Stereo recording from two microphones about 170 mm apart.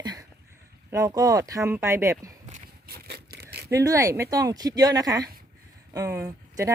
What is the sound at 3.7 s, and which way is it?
Speech, 20° right (ahead or behind).